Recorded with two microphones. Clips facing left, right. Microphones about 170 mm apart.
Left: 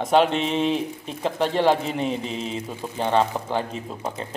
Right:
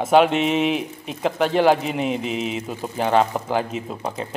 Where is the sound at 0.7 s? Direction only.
30° left (ahead or behind).